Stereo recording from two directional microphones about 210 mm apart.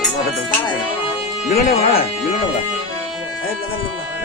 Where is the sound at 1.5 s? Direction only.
45° left (ahead or behind).